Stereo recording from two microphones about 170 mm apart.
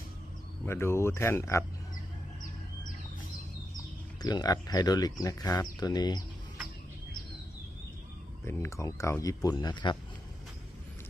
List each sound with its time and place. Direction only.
0.6 s speech: 15° left (ahead or behind)
4.2 s speech: 25° left (ahead or behind)
8.4 s speech: 15° left (ahead or behind)